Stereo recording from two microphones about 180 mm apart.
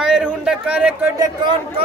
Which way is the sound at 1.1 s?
20° right (ahead or behind).